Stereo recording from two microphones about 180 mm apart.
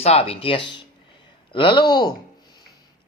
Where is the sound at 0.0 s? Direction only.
35° left (ahead or behind).